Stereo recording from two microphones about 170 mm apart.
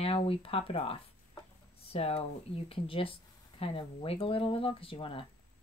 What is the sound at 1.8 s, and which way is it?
Speech, 35° left (ahead or behind).